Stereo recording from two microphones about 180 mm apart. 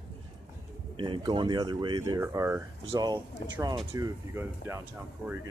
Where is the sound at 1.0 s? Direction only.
25° right (ahead or behind).